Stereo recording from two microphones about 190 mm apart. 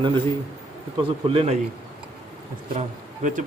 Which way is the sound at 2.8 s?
40° right (ahead or behind).